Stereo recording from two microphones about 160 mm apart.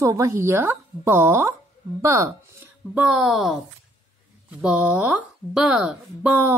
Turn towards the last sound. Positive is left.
turn(degrees=-10)  # may be behind; listen again after turning